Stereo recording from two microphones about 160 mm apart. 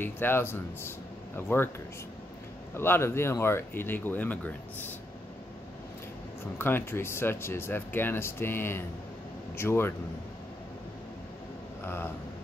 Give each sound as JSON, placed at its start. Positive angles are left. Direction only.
{"t": 0.0, "sound": "speech", "side_deg": 15}
{"t": 2.7, "sound": "speech", "side_deg": 15}
{"t": 6.6, "sound": "speech", "side_deg": 15}
{"t": 11.8, "sound": "speech", "side_deg": 15}